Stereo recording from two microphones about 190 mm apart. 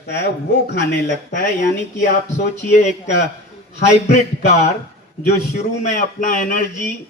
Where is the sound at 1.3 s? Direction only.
40° left (ahead or behind).